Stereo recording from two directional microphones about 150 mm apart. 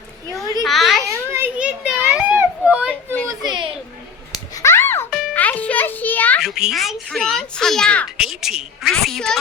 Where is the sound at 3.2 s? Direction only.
30° right (ahead or behind).